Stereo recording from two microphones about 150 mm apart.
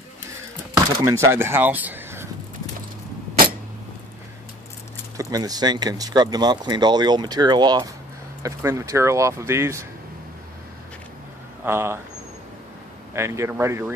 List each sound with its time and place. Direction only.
1.0 s speech: 15° right (ahead or behind)
5.1 s speech: 25° right (ahead or behind)
11.6 s speech: 15° right (ahead or behind)
13.1 s speech: 20° right (ahead or behind)